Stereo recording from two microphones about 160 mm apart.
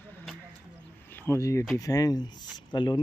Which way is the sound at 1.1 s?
15° left (ahead or behind).